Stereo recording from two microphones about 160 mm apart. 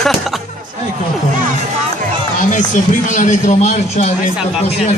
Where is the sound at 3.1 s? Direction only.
50° left (ahead or behind).